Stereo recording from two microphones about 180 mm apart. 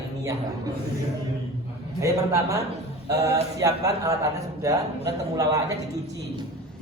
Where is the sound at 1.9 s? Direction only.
15° right (ahead or behind).